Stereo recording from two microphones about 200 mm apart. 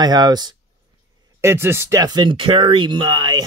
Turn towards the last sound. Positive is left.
turn(degrees=-20)  # may be behind; listen again after turning